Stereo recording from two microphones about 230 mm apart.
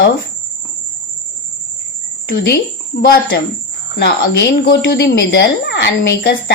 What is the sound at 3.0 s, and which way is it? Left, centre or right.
Speech, left.